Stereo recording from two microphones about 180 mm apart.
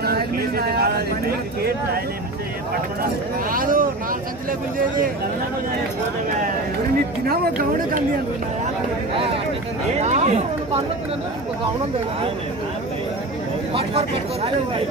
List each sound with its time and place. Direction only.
0.0 s a sound: 55° right (ahead or behind)
3.0 s speech: 50° right (ahead or behind)
9.1 s speech: 30° right (ahead or behind)
13.7 s speech: 35° right (ahead or behind)